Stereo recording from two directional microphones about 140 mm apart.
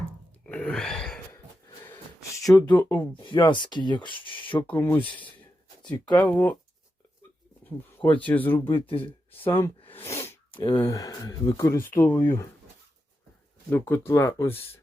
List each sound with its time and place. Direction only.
0.4 s gasp: 10° left (ahead or behind)
2.5 s speech: 30° left (ahead or behind)
2.7 s speech: 10° left (ahead or behind)
3.2 s speech: 35° left (ahead or behind)
4.7 s speech: 15° left (ahead or behind)
8.0 s speech: 10° left (ahead or behind)
8.6 s speech: 40° left (ahead or behind)
9.5 s speech: 15° left (ahead or behind)
9.9 s sneeze: 20° left (ahead or behind)
10.5 s speech: 35° left (ahead or behind)
10.8 s speech: 20° left (ahead or behind)
13.7 s speech: 15° left (ahead or behind)